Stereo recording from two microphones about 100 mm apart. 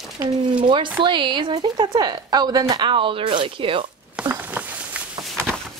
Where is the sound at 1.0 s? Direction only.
55° right (ahead or behind).